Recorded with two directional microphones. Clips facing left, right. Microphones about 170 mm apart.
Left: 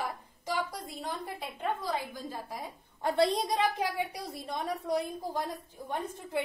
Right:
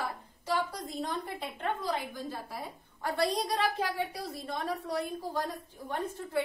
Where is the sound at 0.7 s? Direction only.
10° left (ahead or behind).